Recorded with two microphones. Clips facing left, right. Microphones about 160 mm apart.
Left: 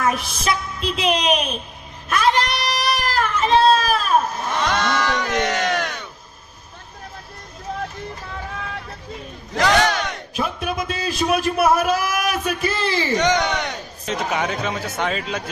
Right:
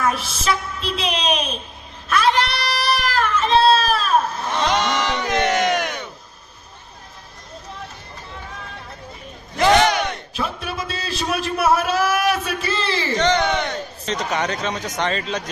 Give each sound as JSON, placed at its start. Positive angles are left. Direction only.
{"t": 0.1, "sound": "a man's voice", "side_deg": 15}
{"t": 2.3, "sound": "child singing", "side_deg": 15}
{"t": 3.7, "sound": "a sound", "side_deg": 10}
{"t": 4.6, "sound": "battle cry", "side_deg": -15}
{"t": 9.6, "sound": "battle cry", "side_deg": -15}
{"t": 10.3, "sound": "a sound", "side_deg": 10}
{"t": 11.0, "sound": "a man's voice", "side_deg": 10}